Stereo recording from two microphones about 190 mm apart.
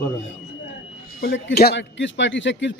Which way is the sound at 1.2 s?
55° left (ahead or behind).